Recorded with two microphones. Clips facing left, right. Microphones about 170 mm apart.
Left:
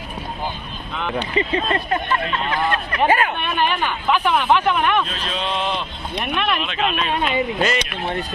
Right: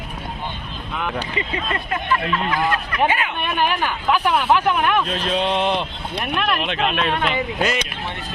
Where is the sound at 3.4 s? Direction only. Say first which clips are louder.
Even; 10° right (ahead or behind).